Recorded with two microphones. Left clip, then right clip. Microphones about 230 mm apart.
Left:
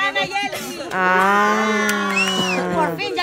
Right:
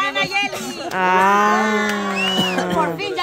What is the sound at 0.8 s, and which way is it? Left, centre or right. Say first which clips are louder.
Speech: right 1 dB; centre.